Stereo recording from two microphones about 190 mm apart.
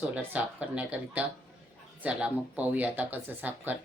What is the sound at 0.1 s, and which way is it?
Speech, 5° right (ahead or behind).